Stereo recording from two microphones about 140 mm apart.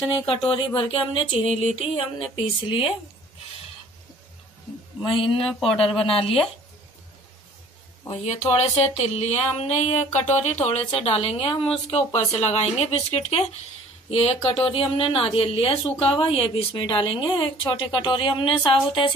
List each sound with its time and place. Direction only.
0.3 s speech: 35° left (ahead or behind)
5.1 s speech: 40° left (ahead or behind)
5.4 s speech: centre (ahead or behind)
6.0 s speech: 40° left (ahead or behind)
8.1 s speech: 55° left (ahead or behind); by 19.1 s 35° left (ahead or behind)